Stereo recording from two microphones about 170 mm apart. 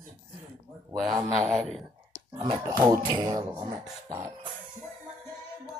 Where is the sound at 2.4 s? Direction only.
20° right (ahead or behind).